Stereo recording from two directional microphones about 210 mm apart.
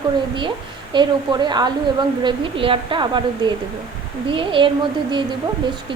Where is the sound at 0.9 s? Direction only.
20° right (ahead or behind).